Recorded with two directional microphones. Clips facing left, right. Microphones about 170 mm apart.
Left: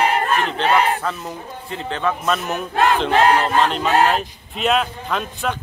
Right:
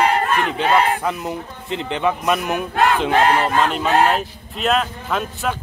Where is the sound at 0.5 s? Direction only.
10° right (ahead or behind).